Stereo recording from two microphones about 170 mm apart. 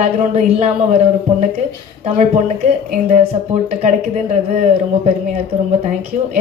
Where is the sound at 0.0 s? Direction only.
40° right (ahead or behind).